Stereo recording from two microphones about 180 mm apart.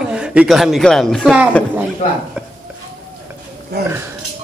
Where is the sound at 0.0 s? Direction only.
5° right (ahead or behind).